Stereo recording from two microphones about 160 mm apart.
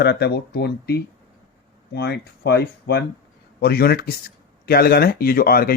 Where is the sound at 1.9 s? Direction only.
90° left.